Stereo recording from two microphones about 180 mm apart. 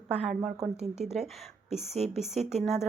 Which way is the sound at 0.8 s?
35° right (ahead or behind).